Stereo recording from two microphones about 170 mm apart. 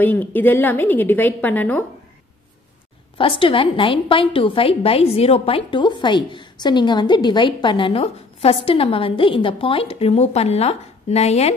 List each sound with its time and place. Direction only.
0.0 s a woman's voice: 10° left (ahead or behind)
3.2 s a woman's voice: 30° left (ahead or behind)